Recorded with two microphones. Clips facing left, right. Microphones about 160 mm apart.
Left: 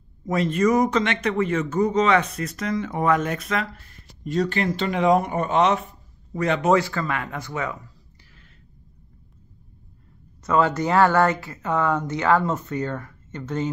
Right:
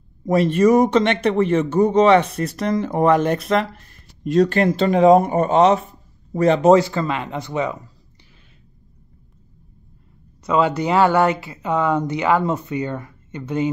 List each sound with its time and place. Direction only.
0.2 s speech: 30° right (ahead or behind)
4.4 s speech: 45° right (ahead or behind); by 7.9 s 20° right (ahead or behind)
10.4 s speech: 15° right (ahead or behind)